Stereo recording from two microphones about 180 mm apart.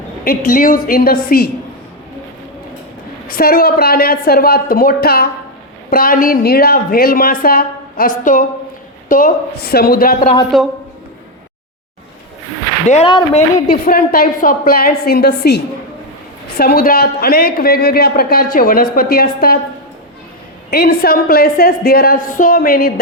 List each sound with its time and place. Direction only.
0.3 s a woman's voice: 50° left (ahead or behind)
3.2 s a woman's voice: 55° left (ahead or behind)
10.5 s a woman's voice: centre (ahead or behind)
12.9 s speech: 30° left (ahead or behind)
13.7 s speech: 55° left (ahead or behind)
20.7 s speech: 60° left (ahead or behind)